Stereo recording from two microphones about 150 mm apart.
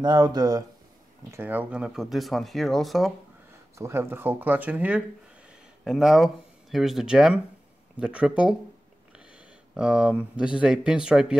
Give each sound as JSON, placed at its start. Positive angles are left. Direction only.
{"t": 0.0, "sound": "speech", "side_deg": -25}
{"t": 1.3, "sound": "speech", "side_deg": -15}
{"t": 3.7, "sound": "speech", "side_deg": -15}